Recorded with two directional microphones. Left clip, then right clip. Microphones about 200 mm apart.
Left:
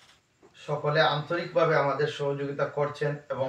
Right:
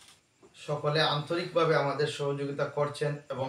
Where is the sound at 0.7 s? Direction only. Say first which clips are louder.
Left 3 dB; 20° right (ahead or behind).